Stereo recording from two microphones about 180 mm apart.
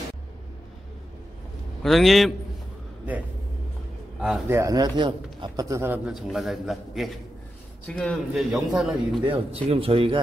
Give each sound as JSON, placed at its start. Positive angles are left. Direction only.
{"t": 1.8, "sound": "a man's voice", "side_deg": 0}
{"t": 4.2, "sound": "speech", "side_deg": -10}
{"t": 6.0, "sound": "a man's voice", "side_deg": 0}
{"t": 9.2, "sound": "speech", "side_deg": -30}